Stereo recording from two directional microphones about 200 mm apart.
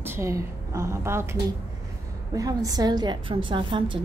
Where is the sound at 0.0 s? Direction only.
15° right (ahead or behind).